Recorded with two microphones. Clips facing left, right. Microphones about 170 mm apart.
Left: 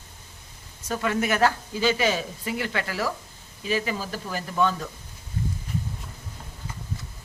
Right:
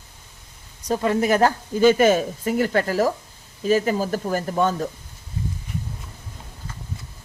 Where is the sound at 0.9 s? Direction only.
30° right (ahead or behind).